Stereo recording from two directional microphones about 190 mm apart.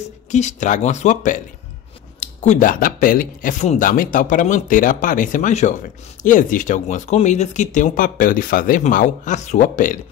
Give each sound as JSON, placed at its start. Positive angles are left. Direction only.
{"t": 0.3, "sound": "speech", "side_deg": 40}